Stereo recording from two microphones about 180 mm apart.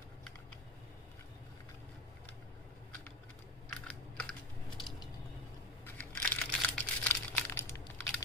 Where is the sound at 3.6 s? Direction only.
5° left (ahead or behind).